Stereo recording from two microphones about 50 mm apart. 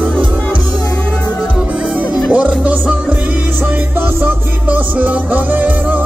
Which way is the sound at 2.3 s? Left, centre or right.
Right.